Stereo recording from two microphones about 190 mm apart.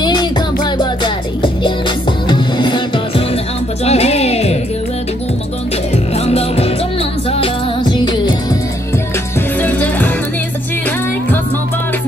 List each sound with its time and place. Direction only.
0.0 s music: 20° left (ahead or behind)
3.8 s music: 35° left (ahead or behind)
6.1 s music: 35° left (ahead or behind)
9.6 s music: 10° left (ahead or behind)